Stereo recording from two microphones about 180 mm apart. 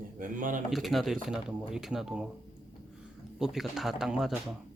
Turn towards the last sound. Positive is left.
turn(degrees=-5)  # may be behind; listen again after turning